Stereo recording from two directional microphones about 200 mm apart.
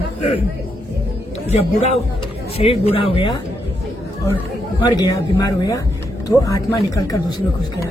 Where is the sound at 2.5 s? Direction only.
30° left (ahead or behind).